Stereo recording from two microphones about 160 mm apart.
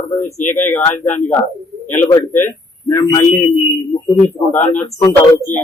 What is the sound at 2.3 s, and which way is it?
Speech, 15° left (ahead or behind).